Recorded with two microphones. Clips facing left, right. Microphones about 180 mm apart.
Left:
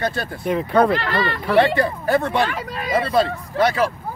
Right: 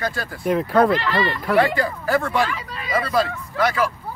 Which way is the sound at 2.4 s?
50° left (ahead or behind).